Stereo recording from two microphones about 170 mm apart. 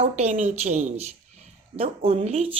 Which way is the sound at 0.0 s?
40° right (ahead or behind).